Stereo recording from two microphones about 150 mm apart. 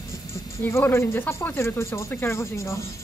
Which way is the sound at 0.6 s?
15° left (ahead or behind).